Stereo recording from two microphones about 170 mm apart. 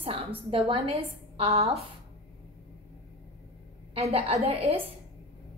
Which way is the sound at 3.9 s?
35° right (ahead or behind).